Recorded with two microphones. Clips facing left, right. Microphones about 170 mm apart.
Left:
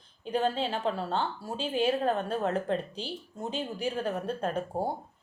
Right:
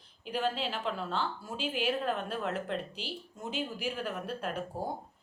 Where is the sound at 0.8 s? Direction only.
35° left (ahead or behind).